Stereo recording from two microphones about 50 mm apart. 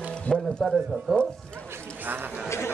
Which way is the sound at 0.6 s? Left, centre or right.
Centre.